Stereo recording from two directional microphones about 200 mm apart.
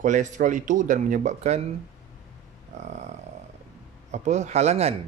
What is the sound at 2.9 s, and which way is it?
Speech, 35° right (ahead or behind).